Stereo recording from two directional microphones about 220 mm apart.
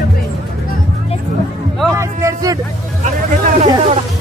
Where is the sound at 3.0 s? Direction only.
35° right (ahead or behind).